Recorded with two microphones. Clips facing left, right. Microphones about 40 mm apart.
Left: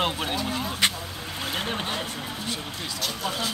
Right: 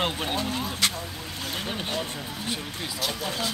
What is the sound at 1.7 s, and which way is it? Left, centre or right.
Speech, centre.